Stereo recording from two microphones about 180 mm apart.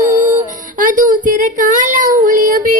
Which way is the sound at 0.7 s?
45° right (ahead or behind).